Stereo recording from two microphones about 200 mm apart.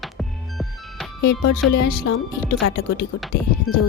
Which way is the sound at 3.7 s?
90° left.